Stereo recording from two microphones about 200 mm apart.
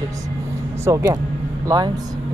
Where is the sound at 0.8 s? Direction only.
15° right (ahead or behind).